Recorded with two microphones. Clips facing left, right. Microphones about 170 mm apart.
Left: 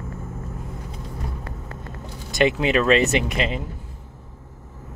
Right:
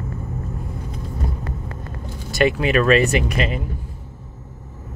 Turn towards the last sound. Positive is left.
turn(degrees=25)  # may be behind; listen again after turning